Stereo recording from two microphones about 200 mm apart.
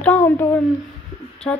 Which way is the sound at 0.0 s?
10° left (ahead or behind).